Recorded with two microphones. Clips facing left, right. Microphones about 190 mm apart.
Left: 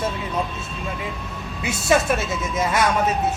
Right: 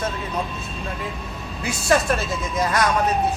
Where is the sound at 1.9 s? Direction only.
Centre (ahead or behind).